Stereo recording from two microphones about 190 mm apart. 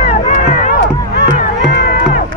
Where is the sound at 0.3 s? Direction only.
70° left (ahead or behind).